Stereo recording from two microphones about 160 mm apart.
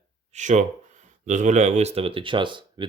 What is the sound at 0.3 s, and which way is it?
Speech, 50° right (ahead or behind).